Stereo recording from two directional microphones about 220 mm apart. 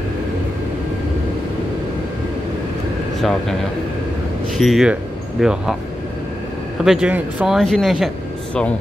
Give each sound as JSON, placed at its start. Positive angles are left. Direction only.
{"t": 3.2, "sound": "a man's voice", "side_deg": 0}
{"t": 4.6, "sound": "speech", "side_deg": 0}
{"t": 6.8, "sound": "speech", "side_deg": -5}